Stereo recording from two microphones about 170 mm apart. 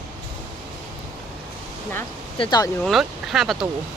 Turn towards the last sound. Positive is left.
turn(degrees=0)  # may be behind; listen again after turning